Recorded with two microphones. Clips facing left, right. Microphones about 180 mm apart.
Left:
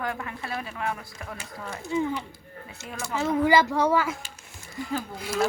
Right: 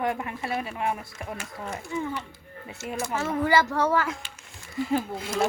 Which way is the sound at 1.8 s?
20° left (ahead or behind).